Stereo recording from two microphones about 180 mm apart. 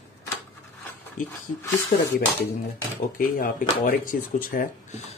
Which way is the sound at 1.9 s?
50° left (ahead or behind).